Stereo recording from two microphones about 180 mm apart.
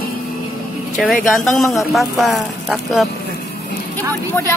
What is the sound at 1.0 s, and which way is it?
Speech, centre (ahead or behind).